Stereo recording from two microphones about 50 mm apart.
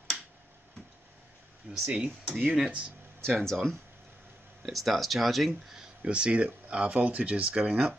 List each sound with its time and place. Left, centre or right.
1.7 s speech: right
2.4 s speech: centre
3.2 s speech: centre
5.5 s speech: centre